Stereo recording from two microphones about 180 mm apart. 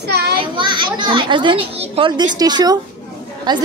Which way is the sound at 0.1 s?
65° right (ahead or behind).